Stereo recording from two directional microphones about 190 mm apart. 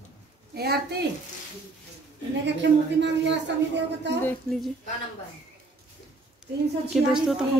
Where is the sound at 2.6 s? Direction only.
65° right (ahead or behind).